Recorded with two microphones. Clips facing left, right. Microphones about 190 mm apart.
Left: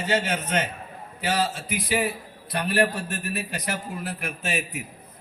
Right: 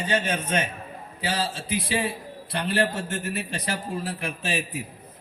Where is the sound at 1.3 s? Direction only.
30° right (ahead or behind).